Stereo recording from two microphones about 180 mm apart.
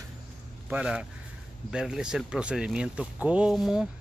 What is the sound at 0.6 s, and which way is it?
Speech, 5° right (ahead or behind).